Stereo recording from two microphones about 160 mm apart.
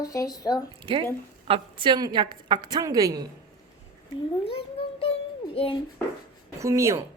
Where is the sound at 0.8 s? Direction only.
35° right (ahead or behind).